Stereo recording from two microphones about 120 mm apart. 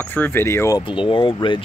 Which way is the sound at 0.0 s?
15° left (ahead or behind).